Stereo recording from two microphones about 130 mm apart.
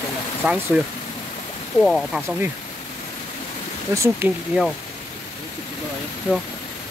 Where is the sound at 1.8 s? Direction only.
Centre (ahead or behind).